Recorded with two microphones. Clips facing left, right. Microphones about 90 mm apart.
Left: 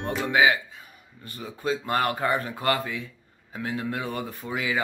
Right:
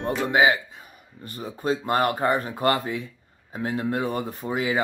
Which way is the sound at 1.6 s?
30° right (ahead or behind).